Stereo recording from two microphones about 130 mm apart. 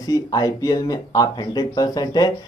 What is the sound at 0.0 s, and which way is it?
Speech, 30° left (ahead or behind).